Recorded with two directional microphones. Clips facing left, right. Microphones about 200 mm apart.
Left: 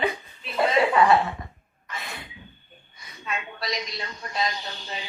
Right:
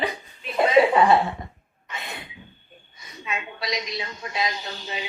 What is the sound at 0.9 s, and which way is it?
Speech, 25° right (ahead or behind).